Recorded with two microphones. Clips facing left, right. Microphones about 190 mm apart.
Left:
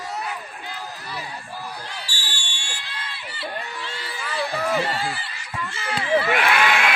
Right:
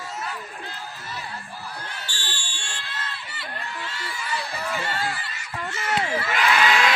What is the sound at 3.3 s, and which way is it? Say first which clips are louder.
Crowd: left 4 dB; 30° left (ahead or behind).